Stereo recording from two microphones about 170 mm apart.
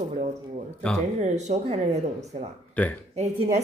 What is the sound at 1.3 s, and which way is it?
Speech, 40° right (ahead or behind).